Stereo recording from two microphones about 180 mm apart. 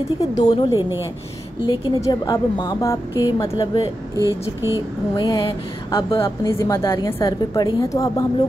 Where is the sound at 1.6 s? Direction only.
20° left (ahead or behind).